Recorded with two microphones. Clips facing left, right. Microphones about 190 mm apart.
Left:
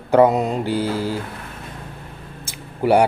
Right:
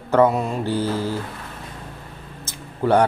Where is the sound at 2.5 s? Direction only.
10° left (ahead or behind).